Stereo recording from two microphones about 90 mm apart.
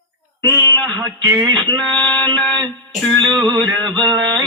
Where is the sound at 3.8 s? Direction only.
60° right (ahead or behind).